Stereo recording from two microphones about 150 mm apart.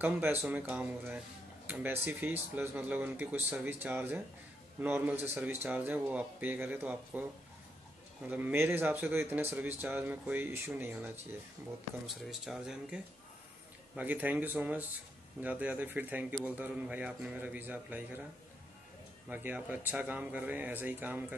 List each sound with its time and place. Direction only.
0.0 s a man's voice: 15° right (ahead or behind)
8.3 s a man's voice: 10° right (ahead or behind)
12.2 s a man's voice: centre (ahead or behind)
19.2 s a man's voice: 10° right (ahead or behind)